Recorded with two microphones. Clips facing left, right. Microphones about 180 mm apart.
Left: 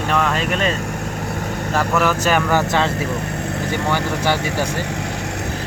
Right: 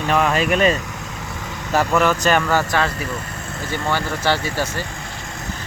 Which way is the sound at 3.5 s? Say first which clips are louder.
Left 1 dB; 70° left (ahead or behind).